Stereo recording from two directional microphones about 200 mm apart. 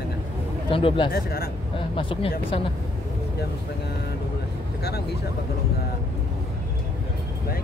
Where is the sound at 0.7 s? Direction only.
25° left (ahead or behind).